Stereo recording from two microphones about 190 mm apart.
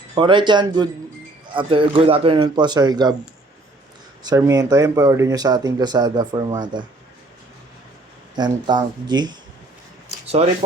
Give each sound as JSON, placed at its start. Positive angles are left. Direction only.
{"t": 0.1, "sound": "speech", "side_deg": -25}
{"t": 4.2, "sound": "speech", "side_deg": -20}
{"t": 8.4, "sound": "speech", "side_deg": -25}
{"t": 10.4, "sound": "speech", "side_deg": -35}